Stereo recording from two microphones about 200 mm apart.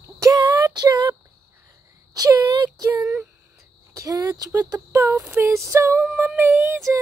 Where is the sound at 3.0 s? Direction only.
5° right (ahead or behind).